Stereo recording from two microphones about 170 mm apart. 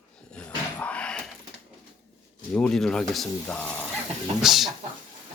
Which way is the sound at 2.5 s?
5° left (ahead or behind).